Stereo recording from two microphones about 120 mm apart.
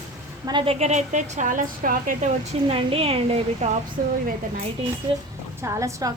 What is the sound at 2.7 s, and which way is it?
Speech, 50° right (ahead or behind).